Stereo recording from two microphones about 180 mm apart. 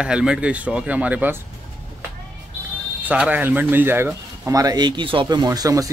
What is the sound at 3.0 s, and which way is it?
Speech, 10° right (ahead or behind).